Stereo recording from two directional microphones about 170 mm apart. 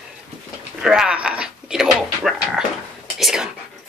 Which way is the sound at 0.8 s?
5° right (ahead or behind).